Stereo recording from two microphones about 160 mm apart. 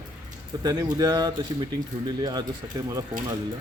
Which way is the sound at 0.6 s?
25° right (ahead or behind).